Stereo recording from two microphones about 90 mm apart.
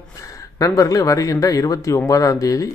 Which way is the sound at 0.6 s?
40° left (ahead or behind).